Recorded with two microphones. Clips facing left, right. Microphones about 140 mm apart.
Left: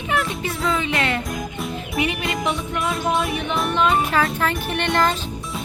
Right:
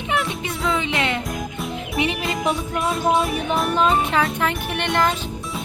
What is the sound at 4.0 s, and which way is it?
Speech, 20° right (ahead or behind).